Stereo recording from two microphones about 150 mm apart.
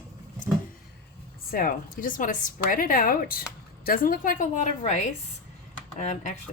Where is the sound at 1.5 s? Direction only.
70° left (ahead or behind); by 5.0 s 50° left (ahead or behind).